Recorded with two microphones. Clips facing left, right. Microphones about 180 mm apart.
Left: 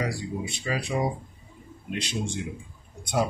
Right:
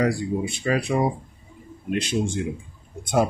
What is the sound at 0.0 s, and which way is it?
Speech, 50° right (ahead or behind).